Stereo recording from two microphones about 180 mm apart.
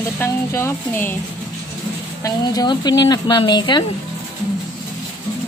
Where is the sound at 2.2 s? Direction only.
20° left (ahead or behind).